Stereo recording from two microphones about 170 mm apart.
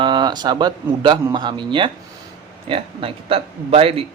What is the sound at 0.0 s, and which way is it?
Speech, 25° right (ahead or behind).